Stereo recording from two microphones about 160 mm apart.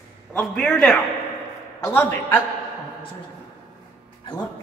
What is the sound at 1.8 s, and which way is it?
Speech, 15° left (ahead or behind).